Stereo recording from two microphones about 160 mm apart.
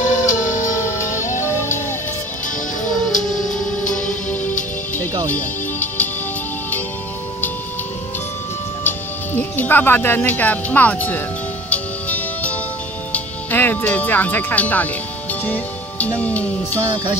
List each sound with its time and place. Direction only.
0.0 s music: 50° left (ahead or behind)
0.7 s music: 15° left (ahead or behind)
3.3 s music: centre (ahead or behind)
8.8 s speech: 10° left (ahead or behind)
11.7 s music: 10° left (ahead or behind)
13.1 s speech: 10° left (ahead or behind)
15.4 s music: 10° left (ahead or behind)